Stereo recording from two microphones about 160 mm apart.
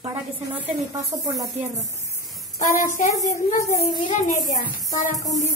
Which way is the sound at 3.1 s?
20° left (ahead or behind).